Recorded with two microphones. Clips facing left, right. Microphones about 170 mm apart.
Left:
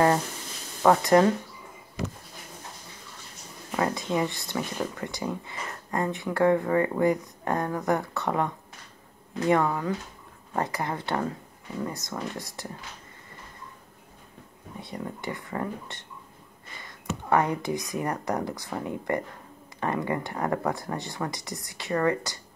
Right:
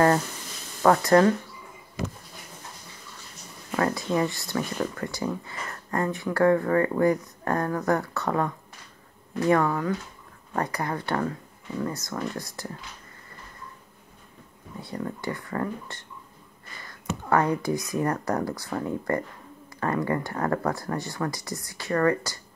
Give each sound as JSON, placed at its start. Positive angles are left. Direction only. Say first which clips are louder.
{"t": 0.8, "sound": "speech", "louder": "right 1 dB", "side_deg": 20}
{"t": 3.7, "sound": "speech", "louder": "right 2 dB", "side_deg": 15}
{"t": 9.5, "sound": "speech", "louder": "right 1 dB", "side_deg": 15}
{"t": 14.8, "sound": "speech", "louder": "right 3 dB", "side_deg": 20}
{"t": 17.3, "sound": "speech", "louder": "right 1 dB", "side_deg": 20}